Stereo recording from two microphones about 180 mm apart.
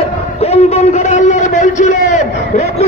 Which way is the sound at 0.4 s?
35° left (ahead or behind).